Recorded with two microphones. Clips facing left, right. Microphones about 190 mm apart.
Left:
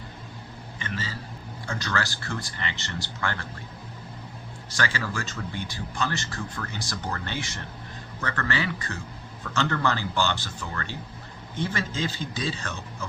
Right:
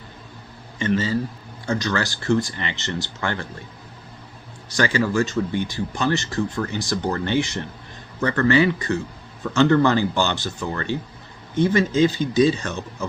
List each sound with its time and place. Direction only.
0.8 s speech: 20° right (ahead or behind)
4.8 s speech: 15° right (ahead or behind)